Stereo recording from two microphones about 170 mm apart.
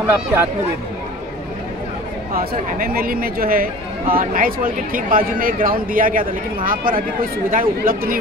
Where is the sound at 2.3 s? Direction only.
60° right (ahead or behind).